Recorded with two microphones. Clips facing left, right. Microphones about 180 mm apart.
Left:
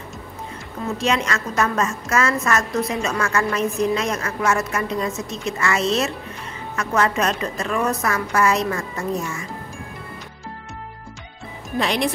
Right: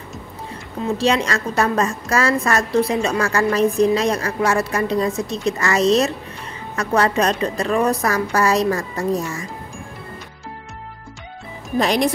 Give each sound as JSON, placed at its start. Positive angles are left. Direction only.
{"t": 0.9, "sound": "a woman's voice", "side_deg": -35}
{"t": 11.8, "sound": "a woman's voice", "side_deg": -40}